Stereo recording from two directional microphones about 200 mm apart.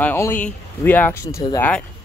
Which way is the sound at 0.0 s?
10° left (ahead or behind).